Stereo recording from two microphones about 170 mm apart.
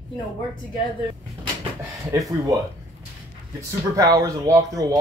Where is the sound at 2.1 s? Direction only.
20° right (ahead or behind).